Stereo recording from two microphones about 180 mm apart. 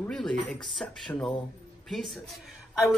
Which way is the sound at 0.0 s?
5° left (ahead or behind).